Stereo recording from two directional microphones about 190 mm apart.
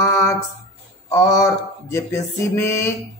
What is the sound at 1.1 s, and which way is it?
A man's voice, 15° left (ahead or behind).